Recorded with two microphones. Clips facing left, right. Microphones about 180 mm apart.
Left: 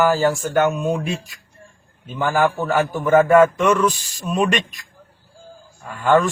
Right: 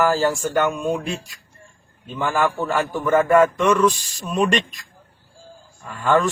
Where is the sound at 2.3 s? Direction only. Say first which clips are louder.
Left 3 dB; 25° left (ahead or behind).